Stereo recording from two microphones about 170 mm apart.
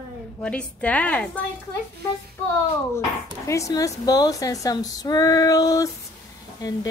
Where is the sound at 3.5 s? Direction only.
20° left (ahead or behind).